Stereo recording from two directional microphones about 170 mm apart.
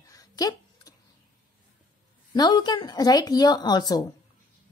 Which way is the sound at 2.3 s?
25° left (ahead or behind).